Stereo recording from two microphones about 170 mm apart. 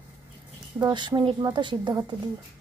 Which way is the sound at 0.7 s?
25° right (ahead or behind).